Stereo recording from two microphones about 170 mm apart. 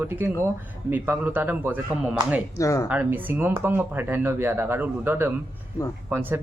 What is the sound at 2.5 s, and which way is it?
Speech, 20° left (ahead or behind).